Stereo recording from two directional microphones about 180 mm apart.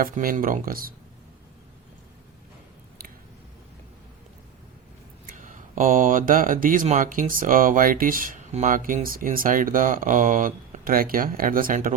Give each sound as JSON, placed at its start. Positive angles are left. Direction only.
{"t": 0.0, "sound": "speech", "side_deg": -50}
{"t": 5.2, "sound": "speech", "side_deg": -45}